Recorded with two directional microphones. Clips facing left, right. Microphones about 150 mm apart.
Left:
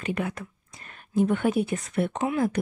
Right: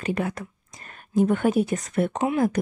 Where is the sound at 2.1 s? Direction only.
20° right (ahead or behind).